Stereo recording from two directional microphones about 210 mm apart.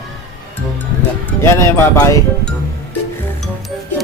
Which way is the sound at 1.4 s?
15° left (ahead or behind).